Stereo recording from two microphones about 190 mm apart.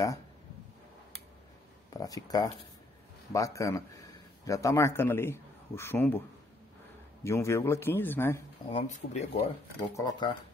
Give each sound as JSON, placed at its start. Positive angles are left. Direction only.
{"t": 1.9, "sound": "a man's voice", "side_deg": 20}
{"t": 7.2, "sound": "a man's voice", "side_deg": 15}
{"t": 8.6, "sound": "speech", "side_deg": 40}
{"t": 9.9, "sound": "speech", "side_deg": 20}